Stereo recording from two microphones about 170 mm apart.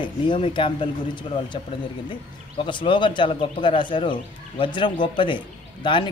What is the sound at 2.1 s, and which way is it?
Speech, 30° left (ahead or behind).